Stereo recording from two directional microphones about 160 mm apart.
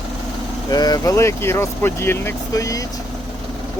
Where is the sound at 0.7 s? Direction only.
25° left (ahead or behind).